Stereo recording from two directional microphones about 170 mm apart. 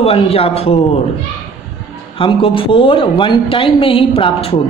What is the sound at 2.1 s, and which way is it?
A woman's voice, 30° left (ahead or behind).